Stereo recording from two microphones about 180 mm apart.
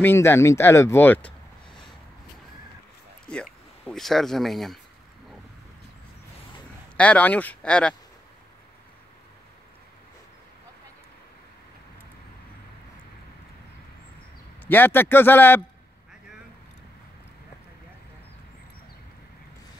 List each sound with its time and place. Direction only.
0.0 s speech: 10° left (ahead or behind)
1.7 s a sound: 25° left (ahead or behind)
3.8 s speech: centre (ahead or behind)
7.0 s speech: 10° left (ahead or behind)
14.7 s speech: 10° left (ahead or behind)